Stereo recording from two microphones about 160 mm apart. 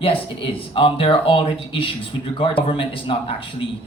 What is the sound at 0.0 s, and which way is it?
A man's voice, 35° left (ahead or behind).